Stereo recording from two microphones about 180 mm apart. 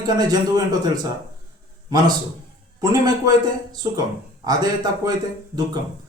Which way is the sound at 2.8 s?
20° right (ahead or behind).